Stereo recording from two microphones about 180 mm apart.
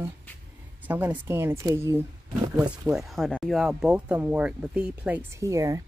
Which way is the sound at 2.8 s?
Centre (ahead or behind).